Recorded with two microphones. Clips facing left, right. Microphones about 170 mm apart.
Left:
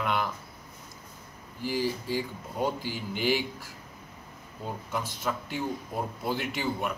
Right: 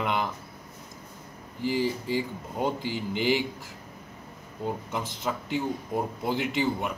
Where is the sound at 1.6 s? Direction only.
20° right (ahead or behind).